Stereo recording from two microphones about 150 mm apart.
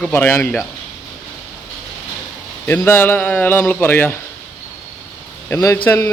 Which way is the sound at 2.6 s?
15° left (ahead or behind).